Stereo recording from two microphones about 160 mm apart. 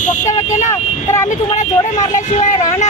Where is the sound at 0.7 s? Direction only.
20° left (ahead or behind).